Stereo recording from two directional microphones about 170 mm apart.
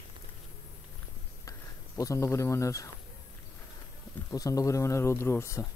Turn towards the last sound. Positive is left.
turn(degrees=15)  # may be behind; listen again after turning